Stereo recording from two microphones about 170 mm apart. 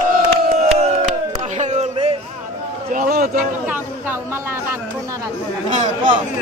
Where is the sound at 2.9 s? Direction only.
55° right (ahead or behind).